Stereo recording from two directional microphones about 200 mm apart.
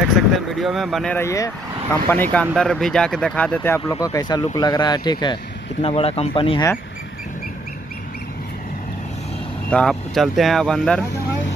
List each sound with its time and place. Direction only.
0.0 s speech: centre (ahead or behind)
3.9 s speech: 20° left (ahead or behind)
9.7 s speech: 5° left (ahead or behind)